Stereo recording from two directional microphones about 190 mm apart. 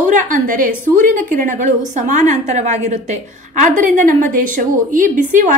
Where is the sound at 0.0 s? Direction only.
40° right (ahead or behind).